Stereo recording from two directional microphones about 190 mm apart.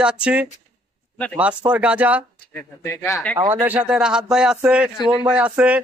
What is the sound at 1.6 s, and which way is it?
Speech, 5° right (ahead or behind).